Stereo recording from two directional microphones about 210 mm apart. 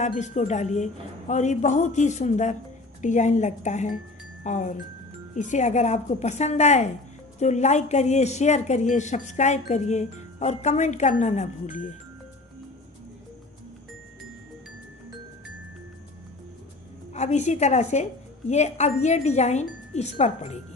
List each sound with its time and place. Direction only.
0.0 s speech: 35° left (ahead or behind)
17.1 s speech: 35° left (ahead or behind)